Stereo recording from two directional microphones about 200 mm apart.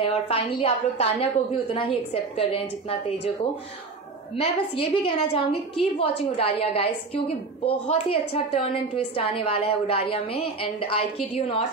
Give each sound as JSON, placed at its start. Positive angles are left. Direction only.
{"t": 0.0, "sound": "a woman's voice", "side_deg": 30}
{"t": 4.4, "sound": "a woman's voice", "side_deg": 30}